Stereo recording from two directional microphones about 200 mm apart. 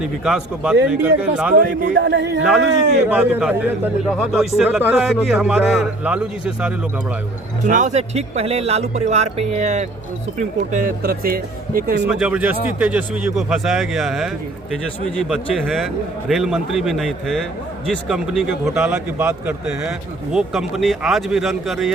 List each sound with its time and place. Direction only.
0.3 s a man's voice: 5° right (ahead or behind)
1.5 s speech: 45° right (ahead or behind)
2.0 s a man's voice: 60° right (ahead or behind)
3.1 s a man's voice: 5° right (ahead or behind)
7.6 s speech: 40° right (ahead or behind)
12.0 s a man's voice: 5° right (ahead or behind)